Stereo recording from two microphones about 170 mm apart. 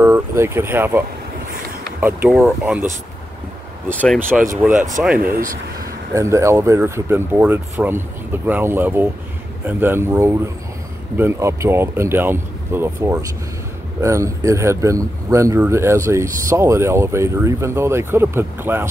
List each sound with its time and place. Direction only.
0.0 s speech: 15° right (ahead or behind)
3.9 s speech: 10° left (ahead or behind)
4.5 s speech: 15° right (ahead or behind)
5.2 s speech: 55° right (ahead or behind)
6.1 s speech: 15° right (ahead or behind)